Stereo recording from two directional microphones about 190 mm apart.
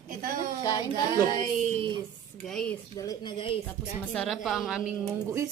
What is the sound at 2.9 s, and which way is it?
Speech, 20° left (ahead or behind).